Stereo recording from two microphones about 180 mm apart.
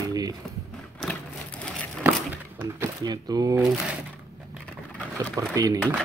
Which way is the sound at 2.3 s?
10° right (ahead or behind).